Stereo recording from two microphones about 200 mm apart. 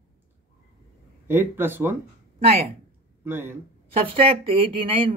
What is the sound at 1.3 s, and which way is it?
Speech, 10° right (ahead or behind).